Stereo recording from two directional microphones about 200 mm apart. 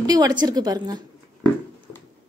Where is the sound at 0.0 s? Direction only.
20° right (ahead or behind).